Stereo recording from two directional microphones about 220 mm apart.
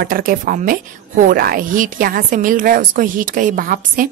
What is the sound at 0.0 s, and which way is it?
A woman's voice, 40° right (ahead or behind).